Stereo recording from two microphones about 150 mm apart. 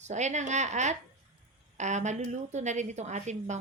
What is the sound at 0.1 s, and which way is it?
Speech, 50° right (ahead or behind).